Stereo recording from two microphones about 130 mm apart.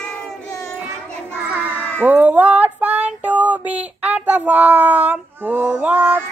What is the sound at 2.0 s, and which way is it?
Female singing, 15° right (ahead or behind).